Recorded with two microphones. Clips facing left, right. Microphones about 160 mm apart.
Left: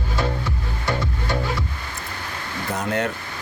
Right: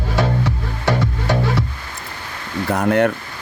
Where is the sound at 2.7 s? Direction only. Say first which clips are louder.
Right 8 dB; 55° right (ahead or behind).